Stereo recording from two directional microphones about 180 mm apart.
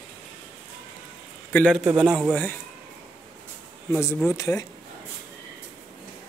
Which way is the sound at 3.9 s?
15° left (ahead or behind).